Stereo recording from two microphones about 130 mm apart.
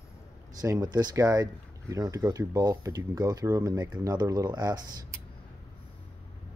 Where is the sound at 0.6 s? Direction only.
30° right (ahead or behind).